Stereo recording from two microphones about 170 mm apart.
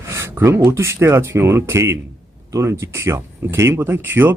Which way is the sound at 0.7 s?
15° right (ahead or behind).